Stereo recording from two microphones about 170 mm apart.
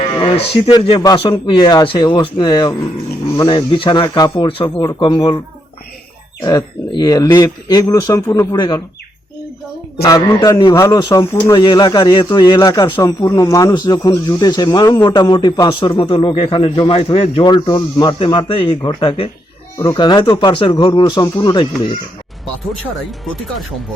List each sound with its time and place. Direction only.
0.7 s a man's voice: 25° left (ahead or behind)
6.4 s a man's voice: 25° left (ahead or behind)
10.0 s a man's voice: 20° left (ahead or behind)
19.7 s a man's voice: 20° left (ahead or behind)